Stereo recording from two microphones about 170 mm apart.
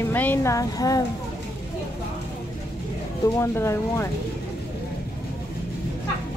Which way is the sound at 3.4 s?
15° left (ahead or behind).